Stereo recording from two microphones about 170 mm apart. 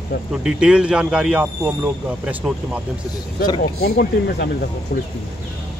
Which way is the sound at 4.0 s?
65° left (ahead or behind).